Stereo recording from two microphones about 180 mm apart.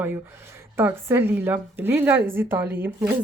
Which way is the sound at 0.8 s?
15° right (ahead or behind).